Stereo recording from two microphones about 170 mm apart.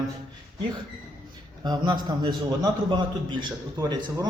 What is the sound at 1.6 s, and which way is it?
A man's voice, 25° right (ahead or behind).